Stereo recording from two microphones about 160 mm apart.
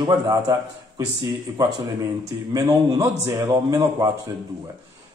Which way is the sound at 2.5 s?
25° right (ahead or behind).